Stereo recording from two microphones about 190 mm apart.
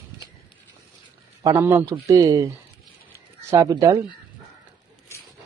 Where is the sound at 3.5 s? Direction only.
15° right (ahead or behind).